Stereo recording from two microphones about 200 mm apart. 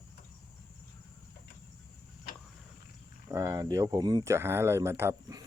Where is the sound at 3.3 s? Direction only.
15° right (ahead or behind).